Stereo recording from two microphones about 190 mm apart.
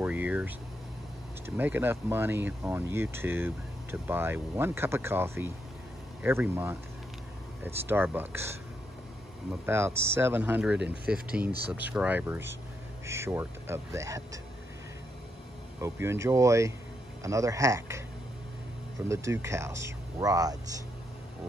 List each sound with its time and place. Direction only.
0.0 s a sound: 10° right (ahead or behind)
1.4 s speech: 10° right (ahead or behind)
15.8 s speech: 15° right (ahead or behind)
19.0 s speech: 15° right (ahead or behind)